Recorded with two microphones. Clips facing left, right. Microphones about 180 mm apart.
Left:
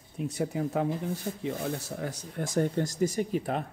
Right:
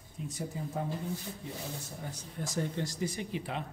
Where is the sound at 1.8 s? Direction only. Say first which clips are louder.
Left 8 dB; 85° left.